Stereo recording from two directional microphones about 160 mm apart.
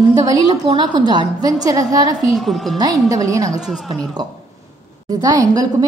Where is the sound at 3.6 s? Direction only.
Centre (ahead or behind).